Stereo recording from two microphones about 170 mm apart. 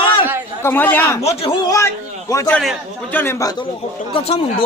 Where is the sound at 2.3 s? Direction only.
20° left (ahead or behind).